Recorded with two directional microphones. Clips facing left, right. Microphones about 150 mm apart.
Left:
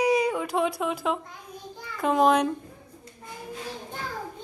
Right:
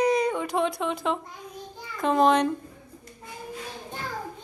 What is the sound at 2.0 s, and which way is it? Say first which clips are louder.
Speech: even; 5° left (ahead or behind).